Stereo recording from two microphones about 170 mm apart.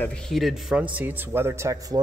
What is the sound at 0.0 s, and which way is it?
A man's voice, 5° left (ahead or behind).